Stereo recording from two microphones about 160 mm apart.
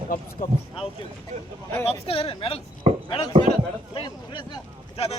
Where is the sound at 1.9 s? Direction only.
35° left (ahead or behind).